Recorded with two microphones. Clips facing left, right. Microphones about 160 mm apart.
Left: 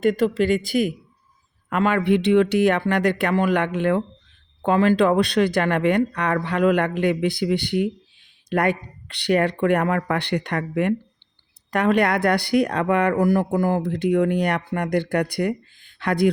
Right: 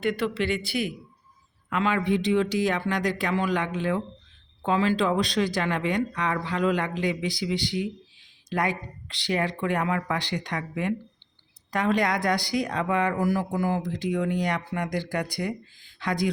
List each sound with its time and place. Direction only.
0.0 s a woman's voice: 45° left (ahead or behind); by 16.3 s 60° left (ahead or behind)